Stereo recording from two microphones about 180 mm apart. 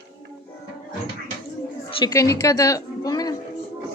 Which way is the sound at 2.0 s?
15° left (ahead or behind).